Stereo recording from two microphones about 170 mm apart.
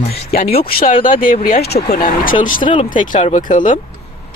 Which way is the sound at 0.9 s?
55° left (ahead or behind).